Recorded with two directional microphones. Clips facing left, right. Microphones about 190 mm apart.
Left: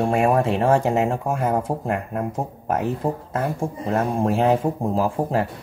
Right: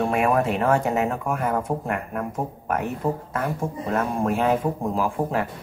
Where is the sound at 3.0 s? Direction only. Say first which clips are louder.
Left 1 dB; 30° left (ahead or behind).